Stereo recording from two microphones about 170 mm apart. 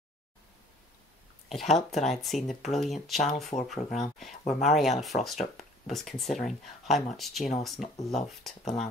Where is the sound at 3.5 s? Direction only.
25° left (ahead or behind).